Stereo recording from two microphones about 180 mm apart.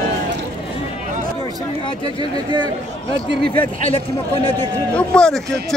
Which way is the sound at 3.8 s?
30° left (ahead or behind).